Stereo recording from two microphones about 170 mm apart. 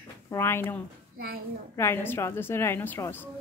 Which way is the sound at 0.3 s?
15° left (ahead or behind).